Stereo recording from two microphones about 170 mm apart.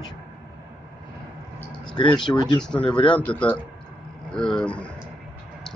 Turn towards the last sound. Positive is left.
turn(degrees=5)  # may be behind; listen again after turning